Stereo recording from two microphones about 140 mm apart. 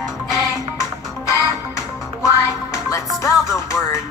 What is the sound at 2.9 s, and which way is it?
Music, 25° left (ahead or behind).